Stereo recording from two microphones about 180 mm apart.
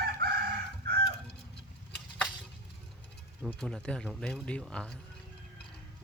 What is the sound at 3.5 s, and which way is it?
Speech, 5° left (ahead or behind).